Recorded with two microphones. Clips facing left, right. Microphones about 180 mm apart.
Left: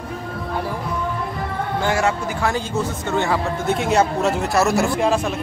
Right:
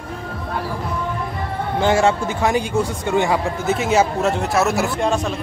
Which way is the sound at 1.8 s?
25° right (ahead or behind).